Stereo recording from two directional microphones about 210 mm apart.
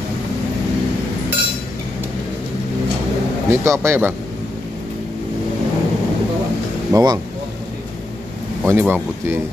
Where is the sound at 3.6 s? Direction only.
15° right (ahead or behind).